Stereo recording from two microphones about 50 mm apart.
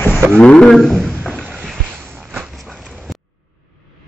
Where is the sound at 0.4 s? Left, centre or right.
Centre.